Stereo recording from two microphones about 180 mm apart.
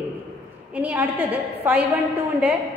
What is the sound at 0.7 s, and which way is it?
A woman's voice, 10° right (ahead or behind).